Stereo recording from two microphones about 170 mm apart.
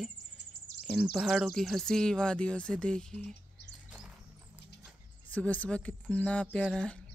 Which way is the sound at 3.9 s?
5° right (ahead or behind).